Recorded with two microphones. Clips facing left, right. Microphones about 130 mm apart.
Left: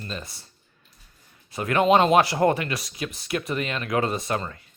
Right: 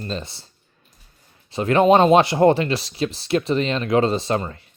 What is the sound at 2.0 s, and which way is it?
Speech, 20° right (ahead or behind).